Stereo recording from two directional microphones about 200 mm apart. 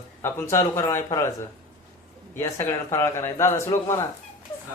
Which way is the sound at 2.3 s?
10° left (ahead or behind).